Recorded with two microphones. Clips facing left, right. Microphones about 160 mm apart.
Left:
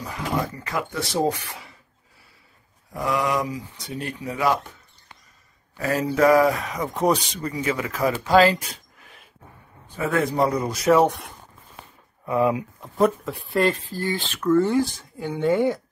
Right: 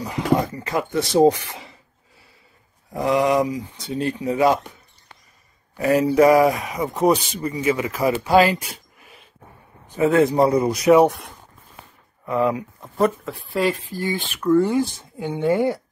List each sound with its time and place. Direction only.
0.7 s speech: 20° right (ahead or behind)
2.9 s speech: 25° right (ahead or behind)
5.8 s speech: 15° right (ahead or behind)
9.9 s speech: 25° right (ahead or behind)
12.3 s speech: 15° left (ahead or behind)
12.8 s speech: centre (ahead or behind)
13.8 s speech: 15° right (ahead or behind)